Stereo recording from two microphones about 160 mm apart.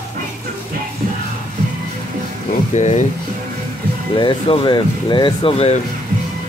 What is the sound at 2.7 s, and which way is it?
Speech, 45° left (ahead or behind).